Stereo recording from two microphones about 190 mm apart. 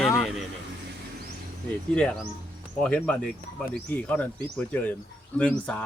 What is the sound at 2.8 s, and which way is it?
Speech, 5° left (ahead or behind).